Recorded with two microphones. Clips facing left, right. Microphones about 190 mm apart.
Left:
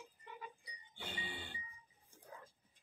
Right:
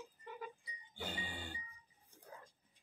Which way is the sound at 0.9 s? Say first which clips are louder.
Right 3 dB; 45° right (ahead or behind).